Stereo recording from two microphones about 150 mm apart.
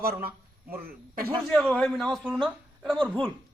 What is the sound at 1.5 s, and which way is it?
Speech, 5° left (ahead or behind).